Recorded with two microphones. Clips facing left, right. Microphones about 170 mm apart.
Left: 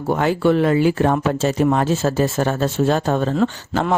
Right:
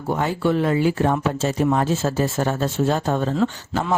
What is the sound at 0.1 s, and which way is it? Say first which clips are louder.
Speech: left 4 dB; 75° left (ahead or behind).